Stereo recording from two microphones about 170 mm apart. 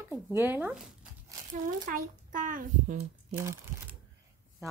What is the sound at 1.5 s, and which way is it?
A child's voice, 50° right (ahead or behind).